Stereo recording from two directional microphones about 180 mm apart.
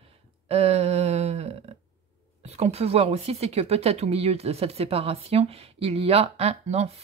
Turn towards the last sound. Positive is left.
turn(degrees=-35)  # may be behind; listen again after turning